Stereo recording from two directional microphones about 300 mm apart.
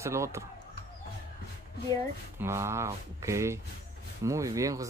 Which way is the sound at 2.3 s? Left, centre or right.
Centre.